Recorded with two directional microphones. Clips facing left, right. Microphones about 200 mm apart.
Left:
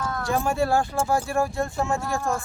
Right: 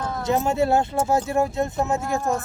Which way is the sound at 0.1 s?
20° right (ahead or behind).